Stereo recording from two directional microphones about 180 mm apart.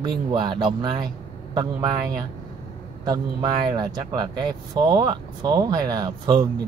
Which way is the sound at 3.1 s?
25° right (ahead or behind).